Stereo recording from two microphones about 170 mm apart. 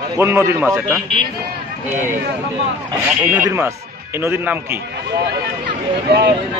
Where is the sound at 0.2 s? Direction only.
15° right (ahead or behind).